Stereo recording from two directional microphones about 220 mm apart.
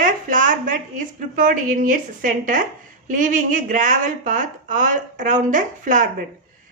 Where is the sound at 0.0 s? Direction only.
35° right (ahead or behind).